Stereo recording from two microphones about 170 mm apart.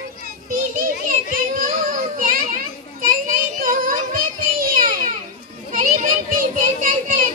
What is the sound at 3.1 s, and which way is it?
Child singing, 55° right (ahead or behind).